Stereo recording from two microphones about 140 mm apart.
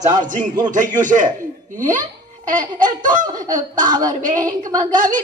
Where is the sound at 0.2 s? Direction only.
65° right (ahead or behind).